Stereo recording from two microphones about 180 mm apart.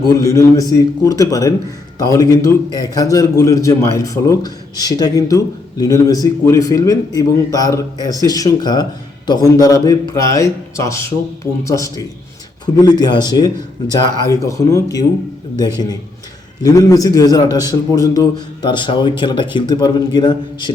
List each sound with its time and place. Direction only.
0.1 s a man's voice: 15° left (ahead or behind)